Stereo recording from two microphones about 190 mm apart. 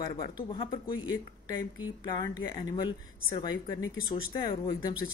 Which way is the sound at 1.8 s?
20° left (ahead or behind).